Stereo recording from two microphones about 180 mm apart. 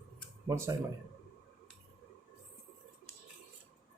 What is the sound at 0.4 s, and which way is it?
Speech, 15° right (ahead or behind).